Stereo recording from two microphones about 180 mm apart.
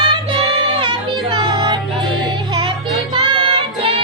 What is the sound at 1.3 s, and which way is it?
Music, 25° right (ahead or behind).